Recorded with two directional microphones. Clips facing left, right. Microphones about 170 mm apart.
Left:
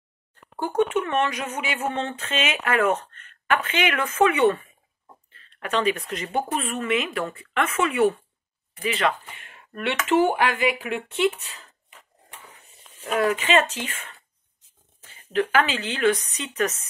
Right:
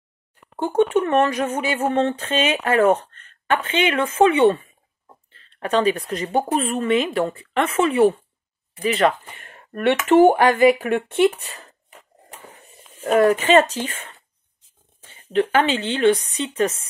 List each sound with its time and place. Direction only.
0.9 s a woman's voice: 35° right (ahead or behind); by 11.6 s 55° right (ahead or behind)
13.0 s a woman's voice: 45° right (ahead or behind); by 16.8 s 30° right (ahead or behind)